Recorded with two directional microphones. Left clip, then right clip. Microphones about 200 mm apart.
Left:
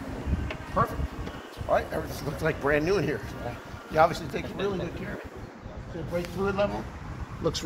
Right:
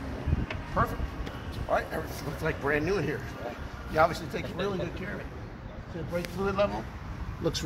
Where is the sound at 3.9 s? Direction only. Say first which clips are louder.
Left 3 dB; 40° left (ahead or behind).